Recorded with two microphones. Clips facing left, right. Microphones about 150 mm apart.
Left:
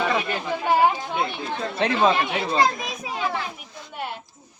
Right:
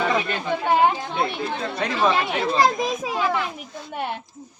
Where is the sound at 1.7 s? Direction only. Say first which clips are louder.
Left 4 dB; 25° left (ahead or behind).